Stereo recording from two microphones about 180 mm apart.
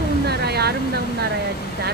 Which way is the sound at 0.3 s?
65° right (ahead or behind).